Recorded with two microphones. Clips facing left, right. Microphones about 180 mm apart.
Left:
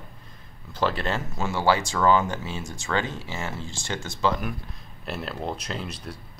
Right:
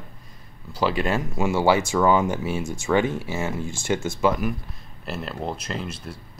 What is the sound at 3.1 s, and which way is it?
Speech, 20° left (ahead or behind).